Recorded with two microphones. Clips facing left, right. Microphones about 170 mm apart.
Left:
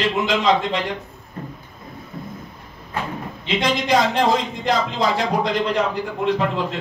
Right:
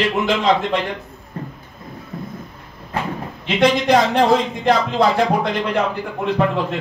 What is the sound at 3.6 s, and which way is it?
Speech, 55° right (ahead or behind).